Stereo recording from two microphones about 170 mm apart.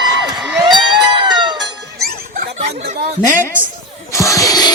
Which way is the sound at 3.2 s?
15° left (ahead or behind).